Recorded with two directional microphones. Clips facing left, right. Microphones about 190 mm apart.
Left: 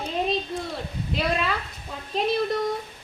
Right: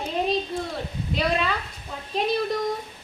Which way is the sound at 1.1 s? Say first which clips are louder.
Right 1 dB; centre (ahead or behind).